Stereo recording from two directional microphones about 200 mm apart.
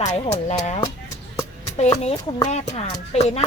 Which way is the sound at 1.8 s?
30° left (ahead or behind).